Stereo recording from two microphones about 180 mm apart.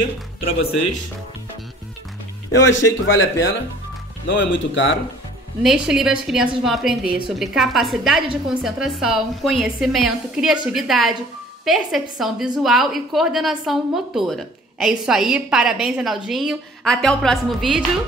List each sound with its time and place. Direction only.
2.5 s speech: 90° left
4.3 s speech: 90° left
5.6 s a woman's voice: centre (ahead or behind)